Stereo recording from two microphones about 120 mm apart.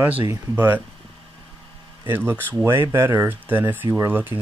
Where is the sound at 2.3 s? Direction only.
20° right (ahead or behind).